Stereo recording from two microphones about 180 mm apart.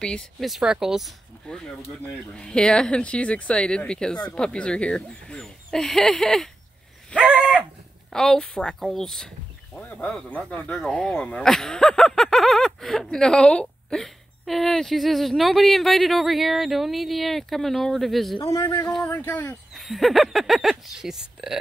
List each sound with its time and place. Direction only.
0.0 s speech: 5° left (ahead or behind)
7.2 s livestock: 5° right (ahead or behind)
8.1 s speech: centre (ahead or behind)
18.4 s speech: 20° left (ahead or behind); by 21.5 s centre (ahead or behind)